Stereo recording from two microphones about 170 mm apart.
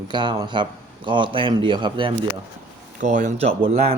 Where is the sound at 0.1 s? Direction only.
25° right (ahead or behind).